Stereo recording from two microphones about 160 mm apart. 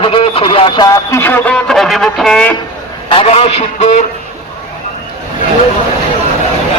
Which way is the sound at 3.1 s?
35° left (ahead or behind).